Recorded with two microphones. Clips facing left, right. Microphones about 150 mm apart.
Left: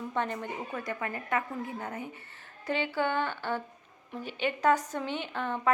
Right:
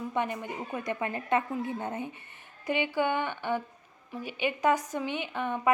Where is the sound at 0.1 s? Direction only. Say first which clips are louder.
Even; 10° right (ahead or behind).